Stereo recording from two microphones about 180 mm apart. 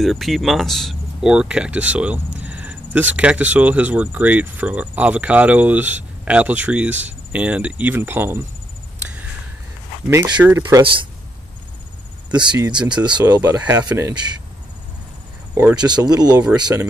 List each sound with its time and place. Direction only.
0.0 s speech: centre (ahead or behind)
10.0 s speech: 20° right (ahead or behind)
12.3 s speech: 25° right (ahead or behind)
15.9 s speech: 20° right (ahead or behind)